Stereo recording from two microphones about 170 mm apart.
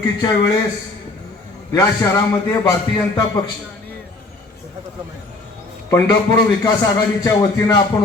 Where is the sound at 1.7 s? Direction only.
20° left (ahead or behind).